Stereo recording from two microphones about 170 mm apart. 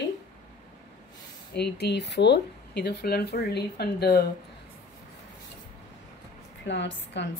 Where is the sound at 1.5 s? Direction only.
80° left.